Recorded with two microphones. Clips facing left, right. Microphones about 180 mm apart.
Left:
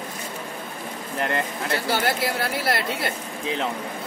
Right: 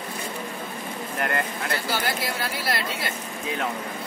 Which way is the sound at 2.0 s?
60° left (ahead or behind).